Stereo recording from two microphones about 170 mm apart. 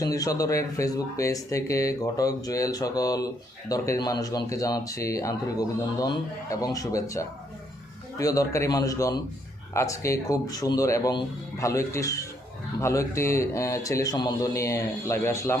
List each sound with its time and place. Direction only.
0.0 s a man's voice: 20° left (ahead or behind)